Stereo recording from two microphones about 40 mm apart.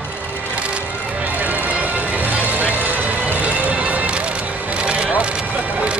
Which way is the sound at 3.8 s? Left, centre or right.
Right.